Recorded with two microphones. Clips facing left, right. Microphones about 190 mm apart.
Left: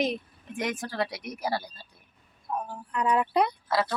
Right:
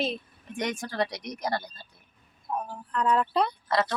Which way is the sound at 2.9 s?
10° left (ahead or behind).